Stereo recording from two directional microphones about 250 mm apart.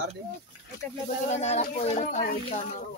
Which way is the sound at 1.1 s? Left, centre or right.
Left.